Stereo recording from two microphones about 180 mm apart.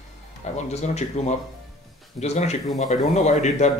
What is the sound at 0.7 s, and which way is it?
Speech, 40° left (ahead or behind).